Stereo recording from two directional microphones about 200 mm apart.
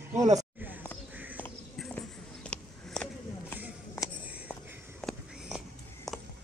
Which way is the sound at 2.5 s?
5° left (ahead or behind).